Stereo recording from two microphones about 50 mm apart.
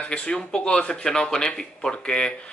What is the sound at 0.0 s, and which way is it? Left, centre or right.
Speech, centre.